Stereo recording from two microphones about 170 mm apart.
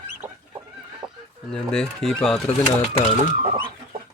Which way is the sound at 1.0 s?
30° right (ahead or behind).